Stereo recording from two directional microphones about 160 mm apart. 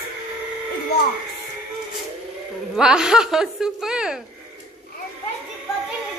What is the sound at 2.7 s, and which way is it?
A woman's voice, 5° right (ahead or behind).